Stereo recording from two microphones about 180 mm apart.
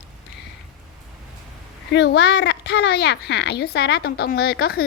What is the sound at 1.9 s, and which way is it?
A woman's voice, 75° left (ahead or behind).